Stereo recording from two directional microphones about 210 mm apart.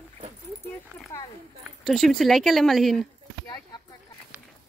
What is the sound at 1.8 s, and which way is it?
Speech, centre (ahead or behind).